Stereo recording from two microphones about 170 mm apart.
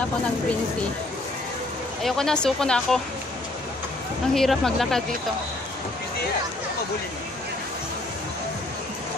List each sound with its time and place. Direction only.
2.0 s speech: 5° left (ahead or behind)
4.3 s speech: 5° left (ahead or behind)